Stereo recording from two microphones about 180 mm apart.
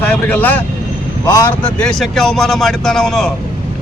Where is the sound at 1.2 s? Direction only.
20° left (ahead or behind).